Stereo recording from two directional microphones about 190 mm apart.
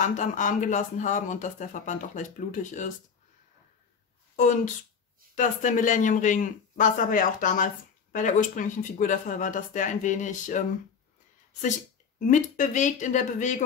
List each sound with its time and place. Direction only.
0.0 s speech: 40° left (ahead or behind)
5.3 s speech: 40° left (ahead or behind)
12.2 s speech: 40° left (ahead or behind)